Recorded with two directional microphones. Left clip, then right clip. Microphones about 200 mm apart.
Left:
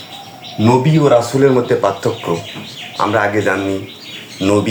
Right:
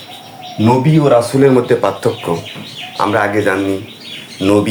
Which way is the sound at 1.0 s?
15° right (ahead or behind).